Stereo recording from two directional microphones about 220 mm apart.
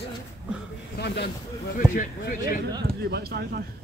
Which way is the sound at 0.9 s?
50° left (ahead or behind).